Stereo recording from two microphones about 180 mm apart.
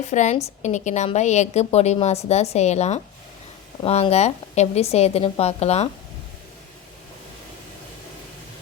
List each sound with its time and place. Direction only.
0.1 s a woman's voice: 40° left (ahead or behind)